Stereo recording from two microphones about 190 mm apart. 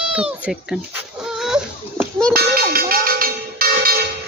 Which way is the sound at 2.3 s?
50° right (ahead or behind).